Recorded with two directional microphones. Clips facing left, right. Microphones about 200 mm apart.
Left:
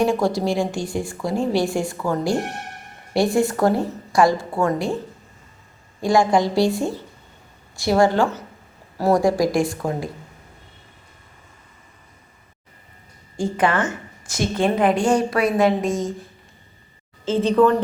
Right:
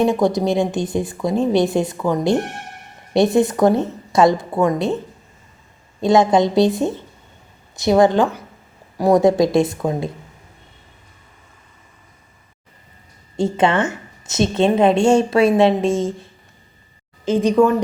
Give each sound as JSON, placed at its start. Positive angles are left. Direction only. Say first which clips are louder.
{"t": 0.0, "sound": "a woman's voice", "louder": "right 3 dB", "side_deg": -20}
{"t": 6.0, "sound": "a woman's voice", "louder": "right 3 dB", "side_deg": -20}
{"t": 13.3, "sound": "a woman's voice", "louder": "right 3 dB", "side_deg": -25}
{"t": 17.2, "sound": "a woman's voice", "louder": "right 2 dB", "side_deg": -15}